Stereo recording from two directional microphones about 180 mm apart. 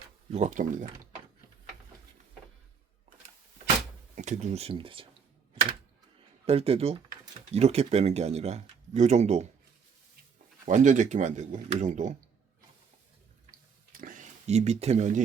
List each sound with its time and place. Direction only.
0.3 s speech: 40° right (ahead or behind)
4.1 s speech: 40° right (ahead or behind)
6.4 s speech: 30° right (ahead or behind)
10.7 s speech: 45° right (ahead or behind)
13.5 s a sound: 50° right (ahead or behind)